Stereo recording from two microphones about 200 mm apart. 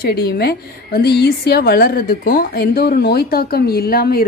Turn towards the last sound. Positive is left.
turn(degrees=50)  # may be behind; listen again after turning